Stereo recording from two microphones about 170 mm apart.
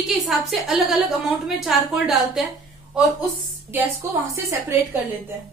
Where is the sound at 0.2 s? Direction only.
Centre (ahead or behind).